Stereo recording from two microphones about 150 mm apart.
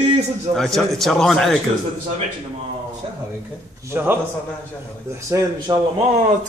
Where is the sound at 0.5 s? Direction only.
Centre (ahead or behind).